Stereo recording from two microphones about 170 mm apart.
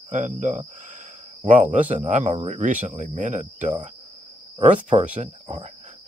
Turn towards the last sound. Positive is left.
turn(degrees=-40)  # may be behind; listen again after turning